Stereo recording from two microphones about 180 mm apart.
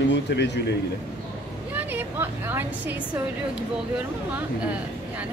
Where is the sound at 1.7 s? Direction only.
10° right (ahead or behind).